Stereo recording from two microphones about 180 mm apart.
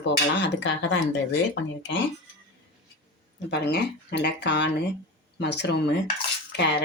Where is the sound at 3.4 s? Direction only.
70° left (ahead or behind).